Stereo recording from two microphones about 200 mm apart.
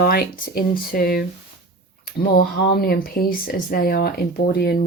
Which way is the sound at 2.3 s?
50° left (ahead or behind).